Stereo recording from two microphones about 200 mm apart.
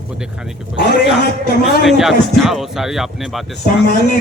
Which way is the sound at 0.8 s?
55° left (ahead or behind).